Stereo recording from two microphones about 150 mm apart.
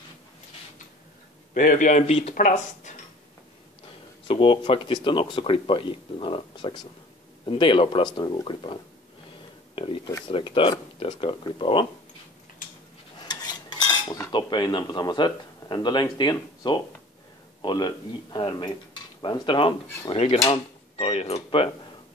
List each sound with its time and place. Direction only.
1.5 s speech: 65° left (ahead or behind); by 2.3 s 40° left (ahead or behind)
2.3 s speech: 60° left (ahead or behind)
4.3 s speech: 35° left (ahead or behind)
9.8 s speech: 35° left (ahead or behind)
13.2 s cutlery: 30° left (ahead or behind)
14.3 s speech: 30° left (ahead or behind)